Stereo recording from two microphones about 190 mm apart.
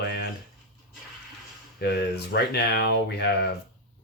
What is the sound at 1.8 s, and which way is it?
Speech, 60° left (ahead or behind).